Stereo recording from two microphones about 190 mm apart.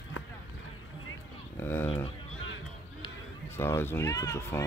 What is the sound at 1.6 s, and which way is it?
Speech, 10° left (ahead or behind).